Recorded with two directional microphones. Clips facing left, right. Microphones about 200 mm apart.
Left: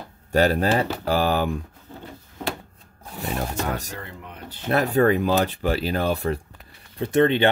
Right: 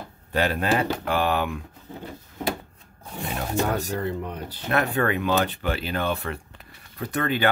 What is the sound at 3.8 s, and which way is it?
Speech, 40° right (ahead or behind).